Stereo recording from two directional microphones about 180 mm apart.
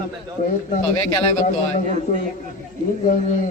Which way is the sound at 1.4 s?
40° left (ahead or behind).